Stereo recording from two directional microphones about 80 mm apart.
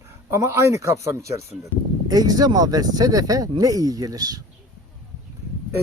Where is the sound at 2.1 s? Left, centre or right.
Right.